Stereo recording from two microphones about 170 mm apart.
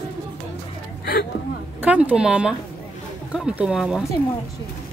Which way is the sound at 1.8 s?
10° right (ahead or behind).